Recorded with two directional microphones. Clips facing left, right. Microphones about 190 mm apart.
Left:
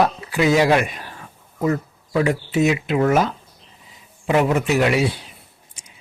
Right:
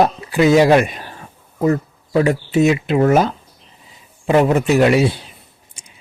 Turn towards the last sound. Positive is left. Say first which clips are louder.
# right 2 dB
turn(degrees=-30)  # may be behind; listen again after turning